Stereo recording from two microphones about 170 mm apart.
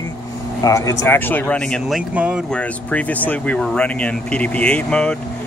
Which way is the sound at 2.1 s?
5° right (ahead or behind).